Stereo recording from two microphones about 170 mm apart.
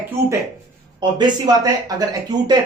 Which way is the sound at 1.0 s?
25° right (ahead or behind).